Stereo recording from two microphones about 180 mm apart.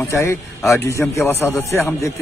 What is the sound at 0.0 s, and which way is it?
A man's voice, 15° left (ahead or behind).